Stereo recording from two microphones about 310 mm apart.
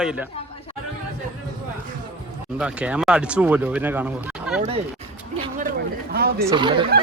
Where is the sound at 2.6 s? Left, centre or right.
Centre.